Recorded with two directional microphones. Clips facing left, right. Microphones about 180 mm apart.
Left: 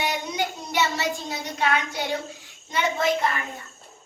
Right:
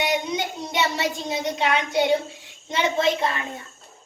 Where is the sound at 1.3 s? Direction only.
25° right (ahead or behind).